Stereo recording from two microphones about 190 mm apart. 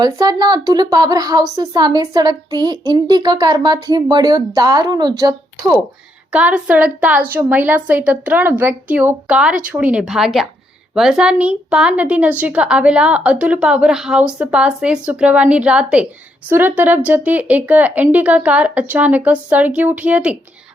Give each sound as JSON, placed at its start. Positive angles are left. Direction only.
{"t": 0.0, "sound": "a woman's voice", "side_deg": -20}
{"t": 6.3, "sound": "a woman's voice", "side_deg": -5}